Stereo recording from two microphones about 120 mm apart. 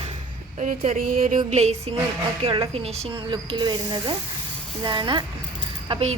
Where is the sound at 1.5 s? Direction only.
70° right (ahead or behind).